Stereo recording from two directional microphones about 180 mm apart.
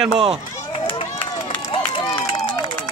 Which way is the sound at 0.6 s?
30° left (ahead or behind).